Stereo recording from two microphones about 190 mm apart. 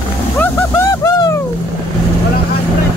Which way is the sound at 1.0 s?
15° left (ahead or behind).